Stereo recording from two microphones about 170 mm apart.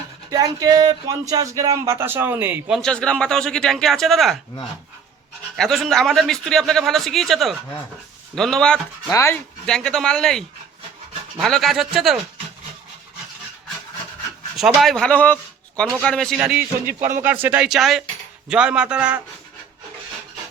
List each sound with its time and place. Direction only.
0.3 s a man's voice: 20° right (ahead or behind); by 4.4 s centre (ahead or behind)
5.5 s a man's voice: centre (ahead or behind)
9.0 s speech: 15° left (ahead or behind)
9.6 s a man's voice: 5° left (ahead or behind)
14.5 s a man's voice: centre (ahead or behind)
16.4 s a man's voice: 10° right (ahead or behind)